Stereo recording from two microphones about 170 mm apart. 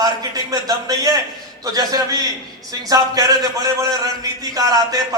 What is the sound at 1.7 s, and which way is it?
Speech, 20° right (ahead or behind).